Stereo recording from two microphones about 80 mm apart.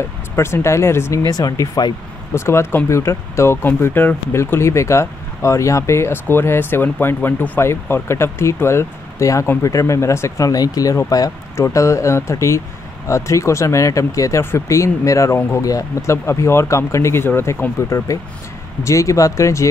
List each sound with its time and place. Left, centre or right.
0.4 s speech: left
2.3 s speech: left
11.5 s speech: left